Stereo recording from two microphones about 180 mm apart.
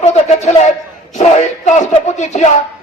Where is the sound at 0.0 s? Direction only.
35° left (ahead or behind).